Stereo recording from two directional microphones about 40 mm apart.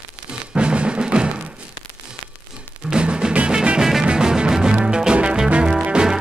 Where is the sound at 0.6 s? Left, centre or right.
Right.